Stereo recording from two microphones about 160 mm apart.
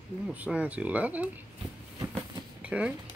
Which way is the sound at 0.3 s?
10° right (ahead or behind).